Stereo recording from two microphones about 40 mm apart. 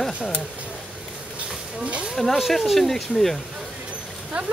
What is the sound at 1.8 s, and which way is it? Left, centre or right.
Speech, right.